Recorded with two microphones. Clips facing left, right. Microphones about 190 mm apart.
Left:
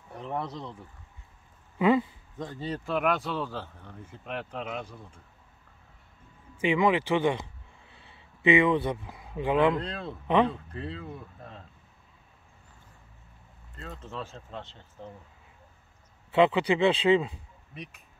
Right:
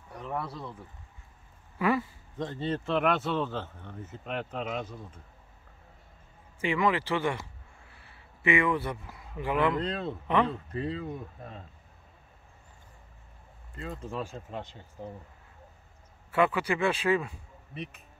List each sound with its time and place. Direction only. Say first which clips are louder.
0.2 s speech: left 2 dB; 20° left (ahead or behind)
1.8 s speech: left 5 dB; 20° left (ahead or behind)
2.6 s speech: right 1 dB; centre (ahead or behind)
6.6 s speech: left 3 dB; 20° left (ahead or behind)
9.8 s speech: right 4 dB; 5° right (ahead or behind)
10.2 s speech: left 3 dB; 15° left (ahead or behind)
10.7 s speech: right 4 dB; 5° right (ahead or behind)
13.7 s speech: right 3 dB; 10° right (ahead or behind)
16.3 s speech: left 4 dB; 20° left (ahead or behind)